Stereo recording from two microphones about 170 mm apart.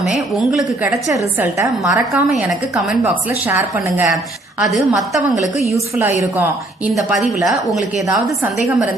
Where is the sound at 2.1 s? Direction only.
Centre (ahead or behind).